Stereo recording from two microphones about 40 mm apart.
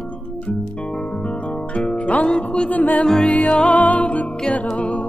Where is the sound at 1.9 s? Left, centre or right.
Left.